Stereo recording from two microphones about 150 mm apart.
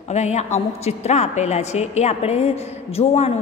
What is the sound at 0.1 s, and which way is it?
A woman's voice, 50° left (ahead or behind).